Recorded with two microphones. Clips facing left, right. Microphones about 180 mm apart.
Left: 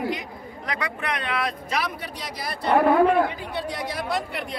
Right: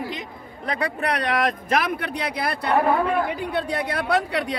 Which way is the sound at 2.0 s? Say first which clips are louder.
Right 7 dB; 60° right (ahead or behind).